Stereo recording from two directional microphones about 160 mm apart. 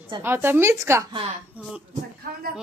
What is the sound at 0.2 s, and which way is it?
Speech, 15° right (ahead or behind).